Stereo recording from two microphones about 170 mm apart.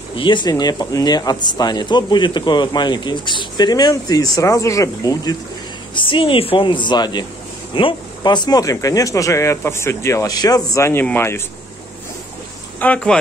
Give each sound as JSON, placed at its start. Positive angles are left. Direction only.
{"t": 0.1, "sound": "speech", "side_deg": 30}
{"t": 12.7, "sound": "speech", "side_deg": 10}